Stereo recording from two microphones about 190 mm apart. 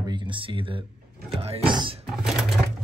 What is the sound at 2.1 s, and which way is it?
Sewing machine, centre (ahead or behind).